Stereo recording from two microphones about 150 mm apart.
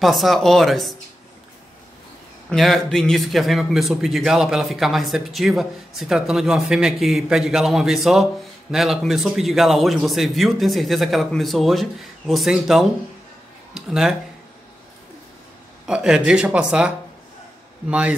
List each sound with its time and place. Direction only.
0.0 s a man's voice: centre (ahead or behind)
2.5 s a man's voice: centre (ahead or behind)
15.9 s speech: 5° right (ahead or behind)